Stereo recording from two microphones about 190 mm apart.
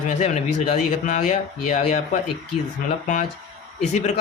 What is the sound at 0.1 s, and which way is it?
Speech, 40° left (ahead or behind).